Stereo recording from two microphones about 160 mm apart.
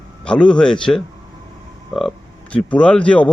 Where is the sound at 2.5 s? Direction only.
5° left (ahead or behind).